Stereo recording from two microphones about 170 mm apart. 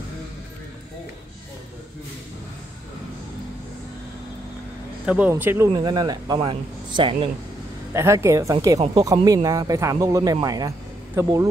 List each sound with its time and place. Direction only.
5.0 s speech: 5° right (ahead or behind); by 7.2 s 30° right (ahead or behind)
7.9 s speech: 15° right (ahead or behind)